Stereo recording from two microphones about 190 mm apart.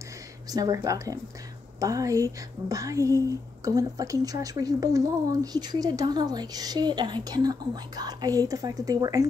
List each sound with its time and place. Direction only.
0.5 s speech: 20° right (ahead or behind)